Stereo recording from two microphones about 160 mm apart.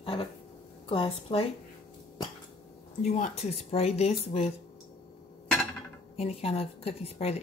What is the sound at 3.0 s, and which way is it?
Speech, 50° left (ahead or behind).